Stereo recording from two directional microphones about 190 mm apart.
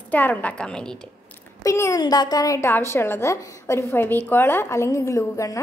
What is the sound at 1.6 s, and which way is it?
A woman's voice, 15° left (ahead or behind).